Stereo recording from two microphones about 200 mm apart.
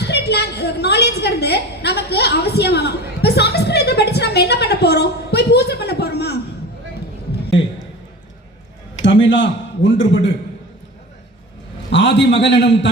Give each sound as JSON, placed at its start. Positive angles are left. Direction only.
{"t": 0.0, "sound": "a woman's voice", "side_deg": 55}
{"t": 9.0, "sound": "a sound", "side_deg": 65}
{"t": 11.9, "sound": "a man's voice", "side_deg": 65}